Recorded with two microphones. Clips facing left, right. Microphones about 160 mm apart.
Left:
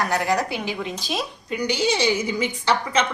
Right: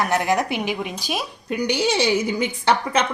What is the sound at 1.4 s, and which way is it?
A woman's voice, 60° right (ahead or behind).